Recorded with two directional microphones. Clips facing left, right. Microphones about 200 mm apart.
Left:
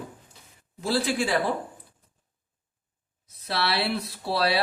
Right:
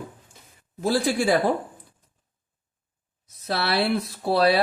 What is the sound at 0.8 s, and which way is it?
Speech, 45° right (ahead or behind).